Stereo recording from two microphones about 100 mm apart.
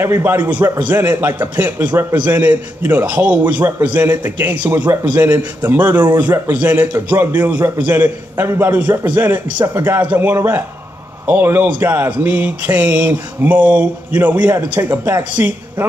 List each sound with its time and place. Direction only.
0.0 s a man's voice: 25° right (ahead or behind)